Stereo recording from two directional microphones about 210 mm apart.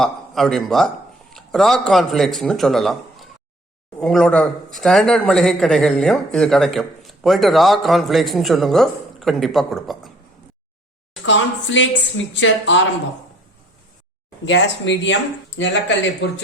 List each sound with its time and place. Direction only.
0.0 s a man's voice: centre (ahead or behind)
11.3 s speech: 60° left (ahead or behind)
14.4 s speech: 60° left (ahead or behind)